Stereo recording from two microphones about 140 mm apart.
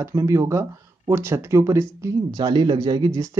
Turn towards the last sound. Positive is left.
turn(degrees=-25)  # may be behind; listen again after turning